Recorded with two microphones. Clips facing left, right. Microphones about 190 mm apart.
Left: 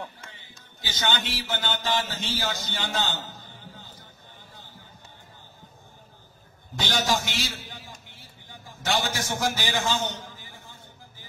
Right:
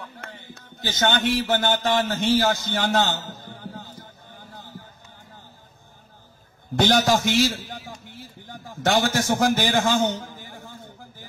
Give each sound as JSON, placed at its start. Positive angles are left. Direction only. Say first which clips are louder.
{"t": 0.2, "sound": "speech", "louder": "right 8 dB", "side_deg": -55}
{"t": 6.7, "sound": "a man's voice", "louder": "right 8 dB", "side_deg": -60}